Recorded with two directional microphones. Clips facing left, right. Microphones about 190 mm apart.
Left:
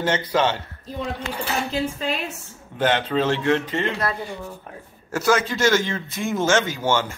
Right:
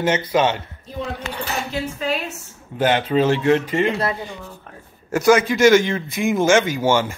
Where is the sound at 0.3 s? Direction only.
10° right (ahead or behind).